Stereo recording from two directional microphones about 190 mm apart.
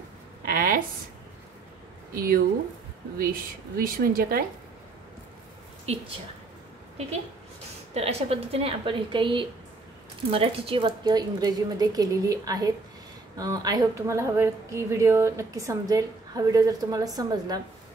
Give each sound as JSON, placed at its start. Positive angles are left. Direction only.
{"t": 0.5, "sound": "a sound", "side_deg": -45}
{"t": 2.1, "sound": "speech", "side_deg": -50}
{"t": 3.7, "sound": "speech", "side_deg": -50}
{"t": 5.9, "sound": "a woman's voice", "side_deg": -35}
{"t": 7.9, "sound": "a woman's voice", "side_deg": -30}